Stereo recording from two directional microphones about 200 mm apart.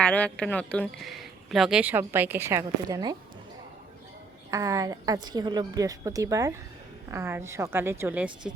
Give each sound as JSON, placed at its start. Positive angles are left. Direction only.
{"t": 0.0, "sound": "speech", "side_deg": 5}
{"t": 4.5, "sound": "a woman's voice", "side_deg": -15}